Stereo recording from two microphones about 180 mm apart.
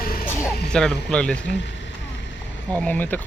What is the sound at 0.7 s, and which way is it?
Speech, 5° left (ahead or behind).